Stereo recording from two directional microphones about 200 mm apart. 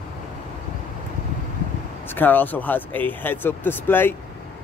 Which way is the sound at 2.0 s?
10° left (ahead or behind).